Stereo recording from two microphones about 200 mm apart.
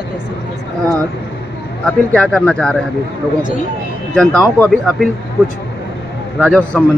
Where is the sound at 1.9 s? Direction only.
5° left (ahead or behind).